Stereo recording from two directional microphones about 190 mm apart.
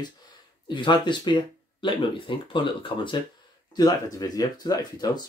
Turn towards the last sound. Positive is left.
turn(degrees=20)  # may be behind; listen again after turning